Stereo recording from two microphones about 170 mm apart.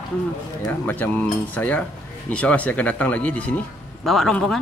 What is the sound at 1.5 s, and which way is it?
A man's voice, 10° left (ahead or behind).